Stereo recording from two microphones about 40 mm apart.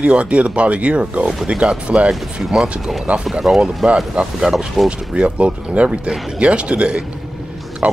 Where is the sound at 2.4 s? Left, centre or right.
Centre.